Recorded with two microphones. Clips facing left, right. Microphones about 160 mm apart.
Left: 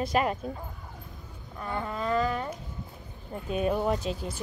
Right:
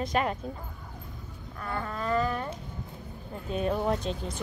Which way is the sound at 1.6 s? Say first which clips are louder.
Left 1 dB; 15° left (ahead or behind).